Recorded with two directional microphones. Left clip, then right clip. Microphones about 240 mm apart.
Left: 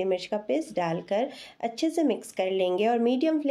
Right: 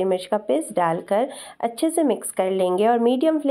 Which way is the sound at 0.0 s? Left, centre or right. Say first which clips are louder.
Right 6 dB; centre.